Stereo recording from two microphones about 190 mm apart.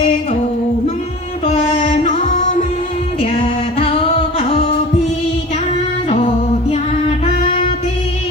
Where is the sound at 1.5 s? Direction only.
30° left (ahead or behind).